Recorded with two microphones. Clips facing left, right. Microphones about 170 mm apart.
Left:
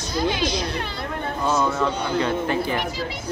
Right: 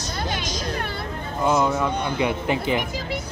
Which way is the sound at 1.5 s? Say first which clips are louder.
Right 2 dB; 15° right (ahead or behind).